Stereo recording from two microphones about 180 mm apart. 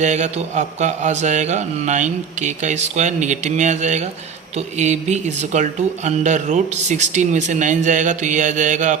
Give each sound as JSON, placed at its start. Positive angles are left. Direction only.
{"t": 0.0, "sound": "speech", "side_deg": -40}